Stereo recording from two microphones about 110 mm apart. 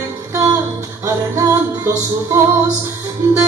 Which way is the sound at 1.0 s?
30° right (ahead or behind).